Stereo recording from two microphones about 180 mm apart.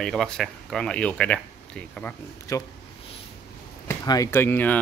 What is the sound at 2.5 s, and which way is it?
Speech, 20° left (ahead or behind).